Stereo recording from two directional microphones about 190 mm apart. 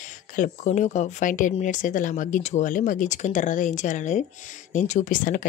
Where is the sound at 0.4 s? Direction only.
40° left (ahead or behind).